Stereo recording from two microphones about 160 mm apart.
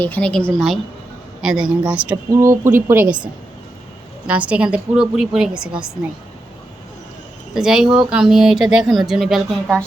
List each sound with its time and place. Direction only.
0.0 s a woman's voice: 10° left (ahead or behind); by 3.2 s 10° right (ahead or behind)
4.3 s a woman's voice: 10° right (ahead or behind)
7.5 s speech: 5° right (ahead or behind)